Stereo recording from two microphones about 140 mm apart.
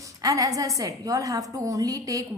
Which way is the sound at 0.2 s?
25° right (ahead or behind).